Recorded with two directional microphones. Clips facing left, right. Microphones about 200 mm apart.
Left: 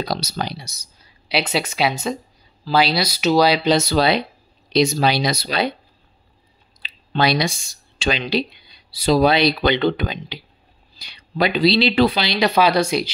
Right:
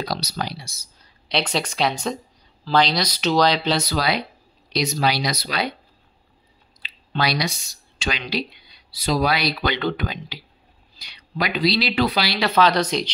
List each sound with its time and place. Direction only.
0.0 s speech: 25° left (ahead or behind)
0.9 s speech: 5° left (ahead or behind)
3.7 s speech: 25° left (ahead or behind)
6.8 s speech: 25° left (ahead or behind); by 13.1 s 10° left (ahead or behind)